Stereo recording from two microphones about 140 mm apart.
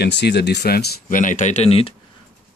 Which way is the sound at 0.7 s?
80° left.